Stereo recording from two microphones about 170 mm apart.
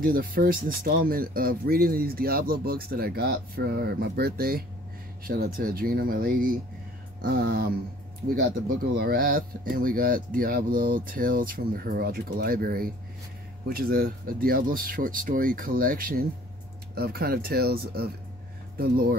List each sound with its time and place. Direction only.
0.0 s speech: 60° right (ahead or behind)
16.9 s speech: 70° right (ahead or behind)